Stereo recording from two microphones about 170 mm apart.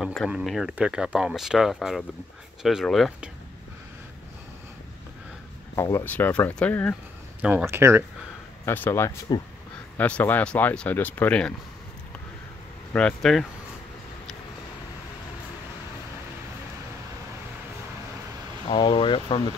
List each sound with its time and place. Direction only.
0.0 s speech: centre (ahead or behind)
5.8 s speech: 15° left (ahead or behind)
7.4 s speech: 10° right (ahead or behind)
8.6 s speech: 15° left (ahead or behind)
12.9 s speech: 5° left (ahead or behind)
18.7 s speech: 30° left (ahead or behind)